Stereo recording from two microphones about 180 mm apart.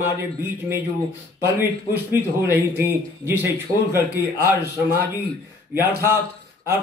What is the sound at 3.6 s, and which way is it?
Speech, 15° right (ahead or behind).